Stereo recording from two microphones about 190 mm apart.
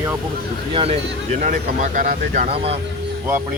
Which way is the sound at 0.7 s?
30° right (ahead or behind).